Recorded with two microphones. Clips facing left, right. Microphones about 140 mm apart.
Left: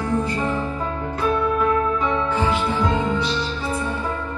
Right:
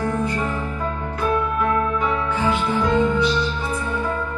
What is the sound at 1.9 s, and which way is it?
Music, 25° left (ahead or behind).